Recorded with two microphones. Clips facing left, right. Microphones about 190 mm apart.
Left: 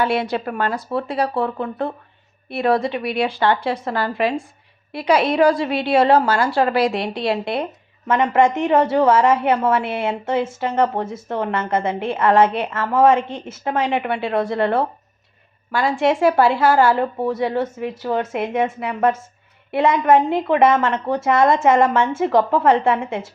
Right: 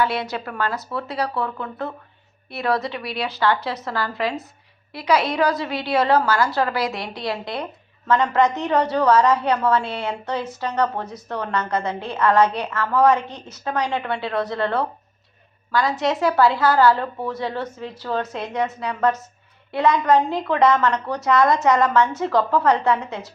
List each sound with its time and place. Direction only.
0.3 s a woman's voice: 25° left (ahead or behind)
16.0 s a woman's voice: 25° left (ahead or behind)